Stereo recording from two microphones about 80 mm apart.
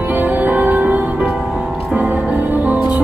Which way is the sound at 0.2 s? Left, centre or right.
Centre.